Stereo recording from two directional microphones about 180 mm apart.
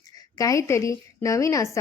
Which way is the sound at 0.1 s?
20° left (ahead or behind).